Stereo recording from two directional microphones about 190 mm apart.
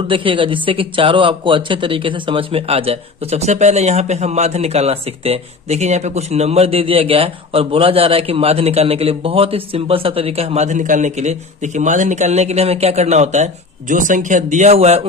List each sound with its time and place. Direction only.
0.1 s speech: 25° right (ahead or behind)